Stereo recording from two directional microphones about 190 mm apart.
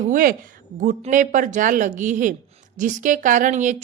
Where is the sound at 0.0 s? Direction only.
45° right (ahead or behind).